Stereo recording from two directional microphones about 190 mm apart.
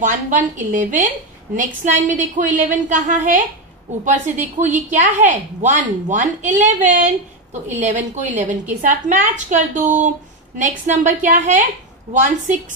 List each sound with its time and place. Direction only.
0.0 s a woman's voice: 40° right (ahead or behind)